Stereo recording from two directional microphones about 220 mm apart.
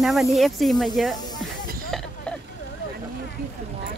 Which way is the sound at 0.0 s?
Centre (ahead or behind).